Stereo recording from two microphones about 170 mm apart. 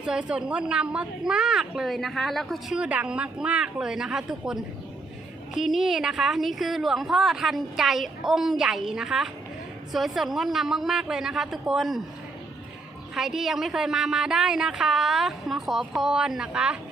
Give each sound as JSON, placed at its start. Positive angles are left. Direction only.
{"t": 0.0, "sound": "a woman's voice", "side_deg": -5}
{"t": 13.1, "sound": "a woman's voice", "side_deg": 0}